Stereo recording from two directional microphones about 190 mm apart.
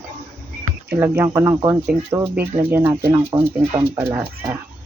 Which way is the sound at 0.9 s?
10° right (ahead or behind).